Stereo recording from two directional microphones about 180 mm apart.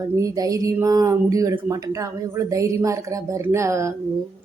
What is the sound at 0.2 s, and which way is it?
A woman's voice, 20° right (ahead or behind).